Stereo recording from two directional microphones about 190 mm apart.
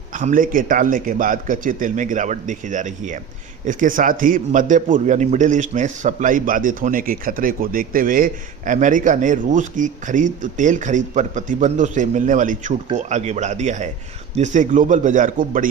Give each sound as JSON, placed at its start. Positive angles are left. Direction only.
{"t": 0.1, "sound": "a man's voice", "side_deg": -45}